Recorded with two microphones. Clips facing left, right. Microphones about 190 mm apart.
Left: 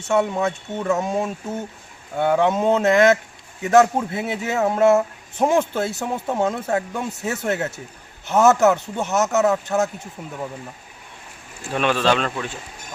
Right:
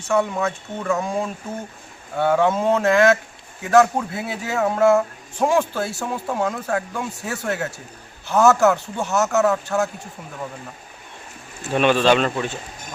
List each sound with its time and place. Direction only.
0.1 s speech: 20° left (ahead or behind)
11.6 s speech: centre (ahead or behind)